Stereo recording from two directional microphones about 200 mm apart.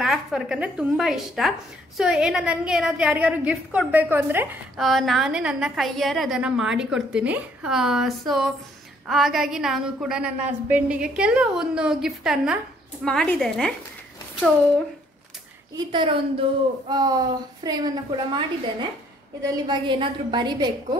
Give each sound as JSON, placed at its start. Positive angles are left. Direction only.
{"t": 0.0, "sound": "a woman's voice", "side_deg": 0}
{"t": 4.7, "sound": "a woman's voice", "side_deg": 0}
{"t": 15.7, "sound": "a woman's voice", "side_deg": -25}